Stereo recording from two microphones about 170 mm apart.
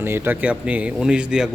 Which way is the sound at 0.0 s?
10° right (ahead or behind).